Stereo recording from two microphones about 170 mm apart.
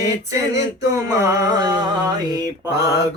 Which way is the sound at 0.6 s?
20° right (ahead or behind).